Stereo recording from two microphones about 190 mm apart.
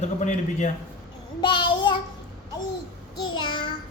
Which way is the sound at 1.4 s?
25° left (ahead or behind).